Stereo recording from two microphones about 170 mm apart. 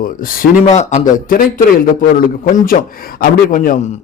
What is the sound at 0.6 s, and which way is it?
Speech, 40° left (ahead or behind).